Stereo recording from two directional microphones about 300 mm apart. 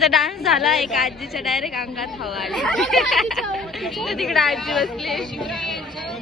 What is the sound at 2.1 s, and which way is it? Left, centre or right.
Chatter, centre.